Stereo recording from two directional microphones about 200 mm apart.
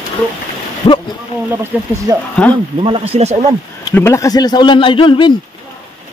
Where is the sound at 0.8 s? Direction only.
25° left (ahead or behind).